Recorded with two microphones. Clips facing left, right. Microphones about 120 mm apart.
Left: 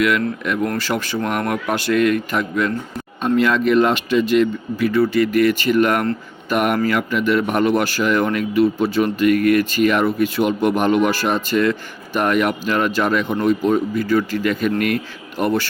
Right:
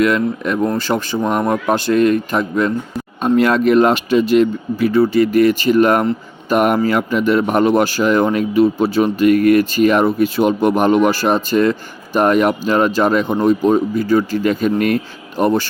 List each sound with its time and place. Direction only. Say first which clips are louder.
0.4 s speech: right 4 dB; 35° right (ahead or behind)